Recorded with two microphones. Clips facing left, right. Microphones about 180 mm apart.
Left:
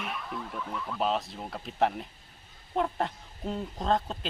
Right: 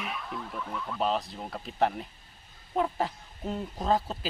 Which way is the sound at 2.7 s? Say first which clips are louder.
Right 1 dB; centre (ahead or behind).